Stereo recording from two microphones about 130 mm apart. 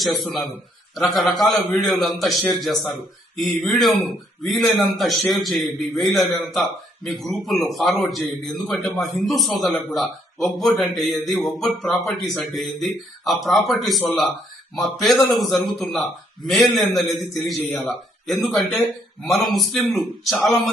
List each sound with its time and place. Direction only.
0.0 s a man's voice: centre (ahead or behind)